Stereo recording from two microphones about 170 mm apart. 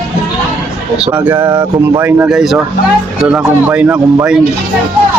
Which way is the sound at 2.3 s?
Centre (ahead or behind).